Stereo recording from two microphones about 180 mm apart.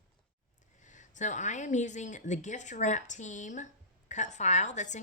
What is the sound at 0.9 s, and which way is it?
A woman's voice, 45° left (ahead or behind).